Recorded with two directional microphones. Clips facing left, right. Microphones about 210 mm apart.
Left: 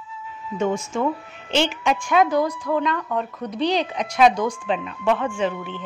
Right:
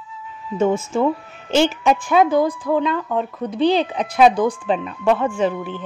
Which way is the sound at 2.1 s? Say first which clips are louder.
Right 2 dB; 30° right (ahead or behind).